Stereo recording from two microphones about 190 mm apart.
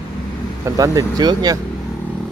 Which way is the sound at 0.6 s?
20° right (ahead or behind).